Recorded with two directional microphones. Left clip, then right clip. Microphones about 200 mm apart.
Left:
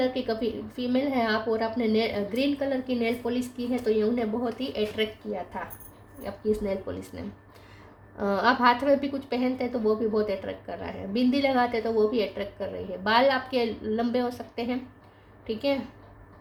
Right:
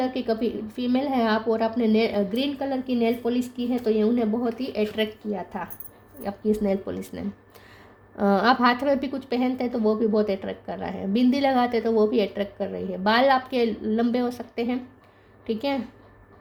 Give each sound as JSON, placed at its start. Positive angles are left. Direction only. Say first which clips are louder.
{"t": 0.0, "sound": "a woman's voice", "louder": "right 2 dB", "side_deg": -45}
{"t": 8.2, "sound": "a woman's voice", "louder": "right 2 dB", "side_deg": -45}